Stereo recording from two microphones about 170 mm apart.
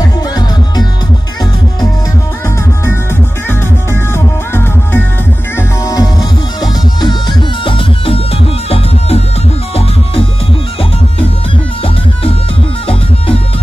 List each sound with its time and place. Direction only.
3.4 s music: 15° left (ahead or behind); by 9.2 s 35° left (ahead or behind)
11.8 s music: 35° left (ahead or behind)